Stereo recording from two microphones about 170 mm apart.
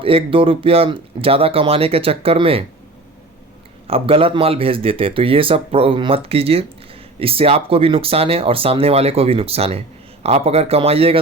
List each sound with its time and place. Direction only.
0.0 s speech: 35° right (ahead or behind)
3.8 s speech: 35° right (ahead or behind)